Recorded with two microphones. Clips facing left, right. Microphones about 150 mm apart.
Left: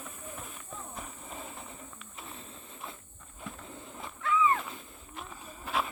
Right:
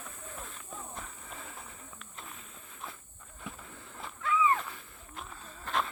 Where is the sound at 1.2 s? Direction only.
20° left (ahead or behind).